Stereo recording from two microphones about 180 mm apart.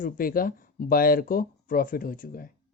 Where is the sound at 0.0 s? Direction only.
50° left (ahead or behind).